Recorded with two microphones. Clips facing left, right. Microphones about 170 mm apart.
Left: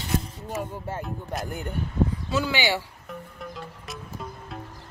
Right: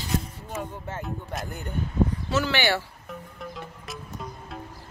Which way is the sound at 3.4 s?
Centre (ahead or behind).